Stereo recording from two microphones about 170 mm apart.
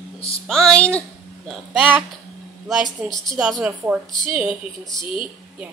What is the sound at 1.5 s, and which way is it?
Speech, 5° right (ahead or behind).